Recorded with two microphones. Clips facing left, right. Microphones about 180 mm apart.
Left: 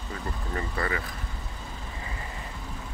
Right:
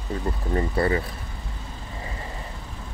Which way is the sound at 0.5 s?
30° right (ahead or behind).